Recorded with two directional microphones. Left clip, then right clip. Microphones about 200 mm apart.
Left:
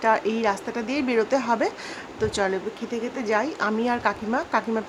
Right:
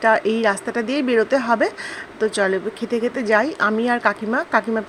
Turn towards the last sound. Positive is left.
turn(degrees=-15)  # may be behind; listen again after turning